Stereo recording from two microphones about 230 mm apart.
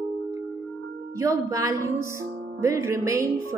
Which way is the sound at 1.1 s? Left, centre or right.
Centre.